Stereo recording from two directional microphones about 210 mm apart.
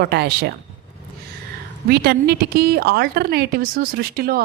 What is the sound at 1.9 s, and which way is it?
A woman's voice, 50° right (ahead or behind).